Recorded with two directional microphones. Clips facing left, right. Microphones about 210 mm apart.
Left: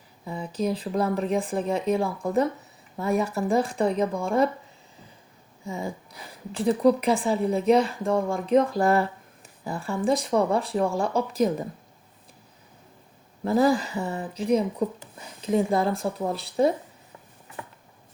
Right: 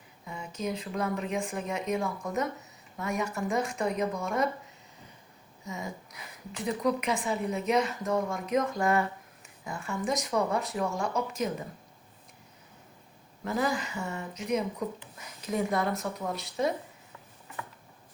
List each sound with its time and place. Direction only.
0.3 s a woman's voice: 35° left (ahead or behind)
5.6 s a woman's voice: 30° left (ahead or behind)
13.4 s a woman's voice: 35° left (ahead or behind)